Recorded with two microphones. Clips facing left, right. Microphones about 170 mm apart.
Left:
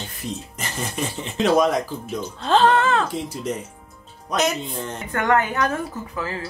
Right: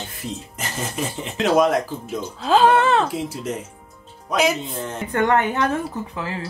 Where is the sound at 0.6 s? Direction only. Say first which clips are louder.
Right 1 dB; centre (ahead or behind); by 3.1 s 20° right (ahead or behind).